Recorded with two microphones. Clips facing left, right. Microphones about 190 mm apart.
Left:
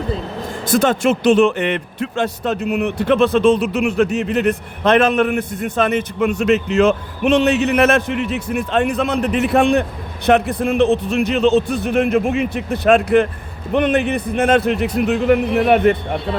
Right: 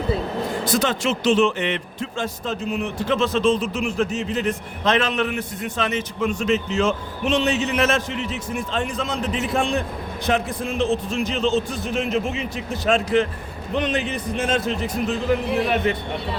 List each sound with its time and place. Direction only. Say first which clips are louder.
0.6 s speech: left 8 dB; 55° left (ahead or behind)